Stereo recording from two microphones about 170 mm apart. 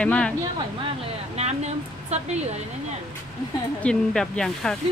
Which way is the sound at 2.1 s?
40° right (ahead or behind).